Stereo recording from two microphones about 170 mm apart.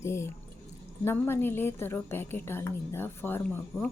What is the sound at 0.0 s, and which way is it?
A woman's voice, 15° left (ahead or behind).